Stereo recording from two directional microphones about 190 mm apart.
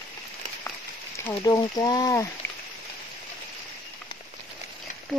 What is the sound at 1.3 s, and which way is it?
Speech, 20° left (ahead or behind).